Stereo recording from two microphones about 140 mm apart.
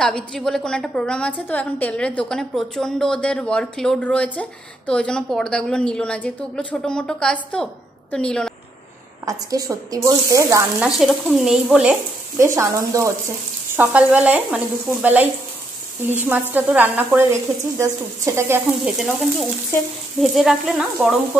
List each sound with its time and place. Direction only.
0.0 s a woman's voice: 5° left (ahead or behind)
9.2 s speech: 25° right (ahead or behind)
11.0 s speech: 5° right (ahead or behind)
12.4 s speech: 20° right (ahead or behind)
13.7 s sizzle: 10° right (ahead or behind)
18.9 s speech: 5° right (ahead or behind)